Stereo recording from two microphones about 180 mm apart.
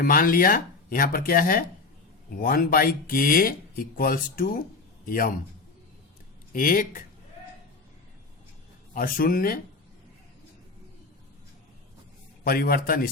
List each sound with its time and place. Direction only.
0.0 s a man's voice: 55° left (ahead or behind)
6.5 s speech: 50° left (ahead or behind)
9.0 s speech: 50° left (ahead or behind)
12.5 s speech: 55° left (ahead or behind)